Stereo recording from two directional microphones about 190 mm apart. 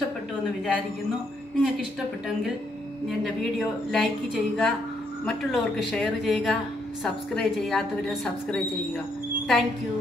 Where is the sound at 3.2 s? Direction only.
Centre (ahead or behind).